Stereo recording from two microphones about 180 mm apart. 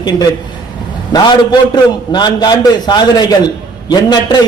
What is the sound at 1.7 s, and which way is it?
A man's voice, 25° left (ahead or behind).